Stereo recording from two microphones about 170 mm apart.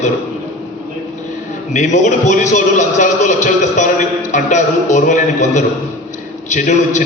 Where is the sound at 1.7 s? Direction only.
45° left (ahead or behind).